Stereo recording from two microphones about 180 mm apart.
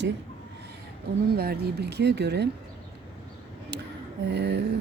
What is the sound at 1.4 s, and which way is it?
Speech, 60° right (ahead or behind).